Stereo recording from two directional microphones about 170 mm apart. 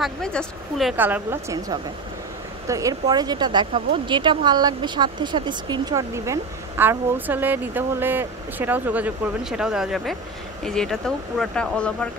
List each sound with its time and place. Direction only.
0.0 s speech: 5° left (ahead or behind)
0.9 s speech: 10° right (ahead or behind)
2.7 s speech: 20° right (ahead or behind); by 12.1 s 5° left (ahead or behind)